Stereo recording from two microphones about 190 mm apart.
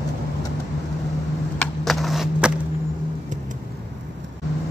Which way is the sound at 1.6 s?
Centre (ahead or behind).